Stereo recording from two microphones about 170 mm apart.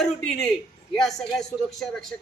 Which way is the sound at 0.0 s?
5° left (ahead or behind).